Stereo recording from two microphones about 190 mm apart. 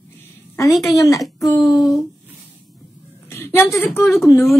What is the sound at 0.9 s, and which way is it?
Speech, 20° left (ahead or behind).